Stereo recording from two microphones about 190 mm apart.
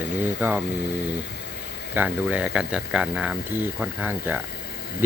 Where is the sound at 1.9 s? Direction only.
10° right (ahead or behind).